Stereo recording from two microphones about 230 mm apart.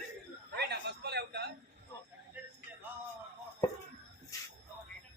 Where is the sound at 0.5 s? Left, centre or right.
Right.